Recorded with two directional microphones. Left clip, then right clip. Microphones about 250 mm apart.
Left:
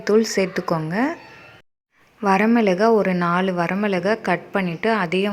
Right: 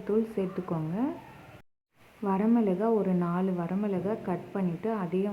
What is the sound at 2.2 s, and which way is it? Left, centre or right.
A woman's voice, left.